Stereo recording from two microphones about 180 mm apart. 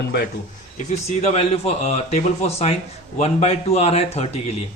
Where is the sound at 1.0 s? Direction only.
35° left (ahead or behind).